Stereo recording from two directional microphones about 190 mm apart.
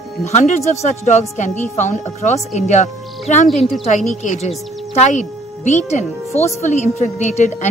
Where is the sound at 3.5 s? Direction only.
Centre (ahead or behind).